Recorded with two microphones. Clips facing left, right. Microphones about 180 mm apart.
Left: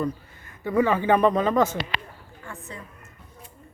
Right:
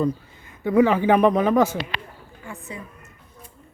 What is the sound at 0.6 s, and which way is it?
Speech, 10° right (ahead or behind).